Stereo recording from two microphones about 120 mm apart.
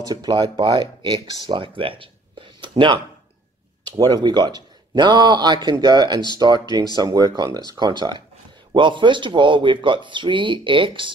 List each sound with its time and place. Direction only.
0.0 s speech: 35° right (ahead or behind)
1.8 s a sound: 45° right (ahead or behind)
3.9 s speech: 35° right (ahead or behind)